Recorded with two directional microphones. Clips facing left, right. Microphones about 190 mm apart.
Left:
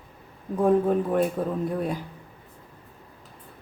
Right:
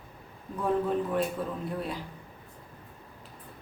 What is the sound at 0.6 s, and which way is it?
Speech, 50° left (ahead or behind).